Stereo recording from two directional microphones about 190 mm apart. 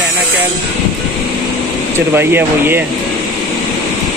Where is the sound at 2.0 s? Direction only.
10° right (ahead or behind).